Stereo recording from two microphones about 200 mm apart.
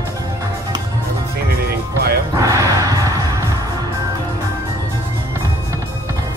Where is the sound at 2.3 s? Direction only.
15° right (ahead or behind).